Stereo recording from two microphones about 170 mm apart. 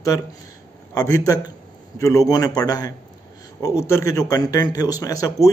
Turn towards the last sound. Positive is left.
turn(degrees=20)  # may be behind; listen again after turning